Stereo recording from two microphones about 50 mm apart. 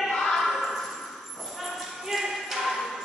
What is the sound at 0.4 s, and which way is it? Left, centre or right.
Basketball bounce, centre.